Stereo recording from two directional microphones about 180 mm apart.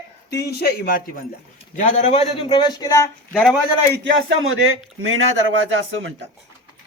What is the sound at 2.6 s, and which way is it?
Speech, 20° left (ahead or behind).